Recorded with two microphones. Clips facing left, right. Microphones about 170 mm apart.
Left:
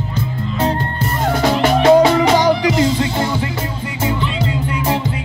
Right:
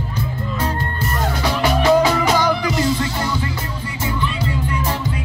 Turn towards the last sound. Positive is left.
turn(degrees=20)  # may be behind; listen again after turning